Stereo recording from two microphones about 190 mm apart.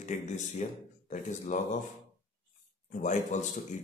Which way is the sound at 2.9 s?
40° left (ahead or behind).